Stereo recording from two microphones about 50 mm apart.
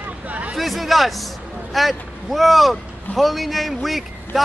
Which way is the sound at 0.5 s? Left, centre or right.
Centre.